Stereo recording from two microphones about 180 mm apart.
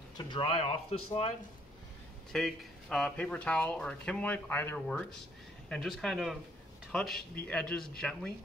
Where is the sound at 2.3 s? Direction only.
Centre (ahead or behind).